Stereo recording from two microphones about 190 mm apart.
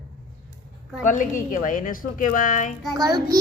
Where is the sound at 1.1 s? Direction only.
45° left (ahead or behind).